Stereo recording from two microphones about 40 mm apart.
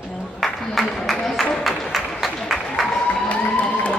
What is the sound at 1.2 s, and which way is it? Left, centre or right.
Applause, centre.